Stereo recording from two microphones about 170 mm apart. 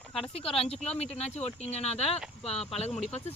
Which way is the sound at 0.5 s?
35° left (ahead or behind).